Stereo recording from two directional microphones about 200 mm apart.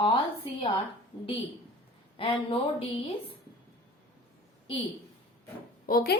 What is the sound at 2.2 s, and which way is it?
Speech, 25° left (ahead or behind).